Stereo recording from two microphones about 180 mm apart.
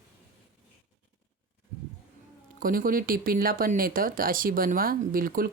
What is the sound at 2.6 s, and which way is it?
Speech, 50° right (ahead or behind).